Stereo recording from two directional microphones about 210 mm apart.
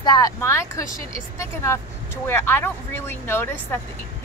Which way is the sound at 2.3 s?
10° left (ahead or behind).